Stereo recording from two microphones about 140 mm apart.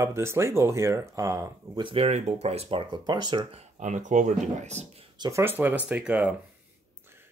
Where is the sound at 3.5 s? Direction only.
60° right (ahead or behind).